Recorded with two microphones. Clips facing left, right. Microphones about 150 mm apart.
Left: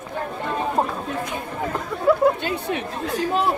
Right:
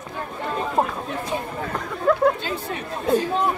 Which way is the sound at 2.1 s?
5° left (ahead or behind).